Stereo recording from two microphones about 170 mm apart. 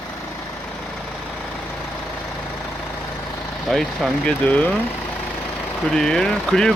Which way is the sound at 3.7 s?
Centre (ahead or behind).